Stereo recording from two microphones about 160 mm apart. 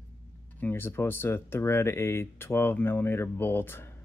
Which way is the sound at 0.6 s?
15° left (ahead or behind).